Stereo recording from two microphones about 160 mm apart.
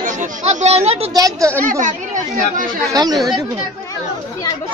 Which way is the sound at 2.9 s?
25° right (ahead or behind).